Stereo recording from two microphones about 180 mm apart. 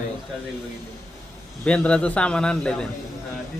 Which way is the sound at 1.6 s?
5° left (ahead or behind).